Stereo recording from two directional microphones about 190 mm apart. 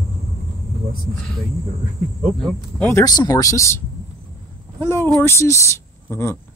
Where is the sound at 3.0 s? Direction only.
20° left (ahead or behind).